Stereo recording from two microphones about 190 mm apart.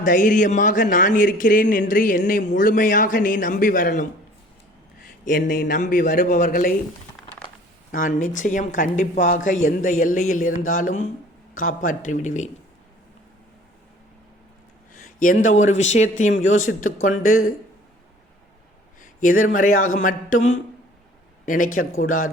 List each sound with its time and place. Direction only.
0.0 s speech: 45° left (ahead or behind)
5.2 s speech: 45° left (ahead or behind)
7.2 s crushing: 5° left (ahead or behind)
7.9 s speech: 45° left (ahead or behind)
15.0 s speech: 45° left (ahead or behind)
19.2 s speech: 45° left (ahead or behind)